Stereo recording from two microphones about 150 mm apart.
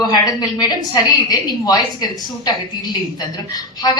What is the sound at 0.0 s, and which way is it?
A woman's voice, 30° left (ahead or behind).